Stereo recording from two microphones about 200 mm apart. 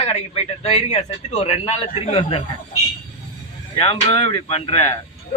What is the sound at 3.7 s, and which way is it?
Speech, 30° left (ahead or behind).